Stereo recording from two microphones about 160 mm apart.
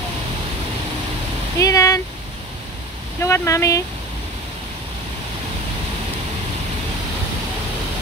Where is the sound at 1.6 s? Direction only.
20° left (ahead or behind).